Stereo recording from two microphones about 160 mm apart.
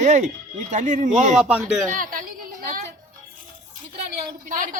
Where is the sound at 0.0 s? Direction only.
50° right (ahead or behind).